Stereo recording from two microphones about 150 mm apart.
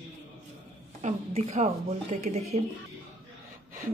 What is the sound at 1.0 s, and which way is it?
Speech, 50° right (ahead or behind).